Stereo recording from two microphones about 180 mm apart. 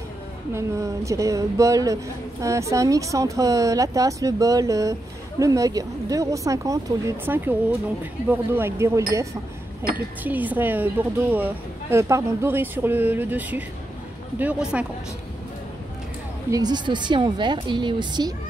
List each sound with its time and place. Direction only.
0.6 s speech: 15° right (ahead or behind)
16.4 s speech: 20° right (ahead or behind)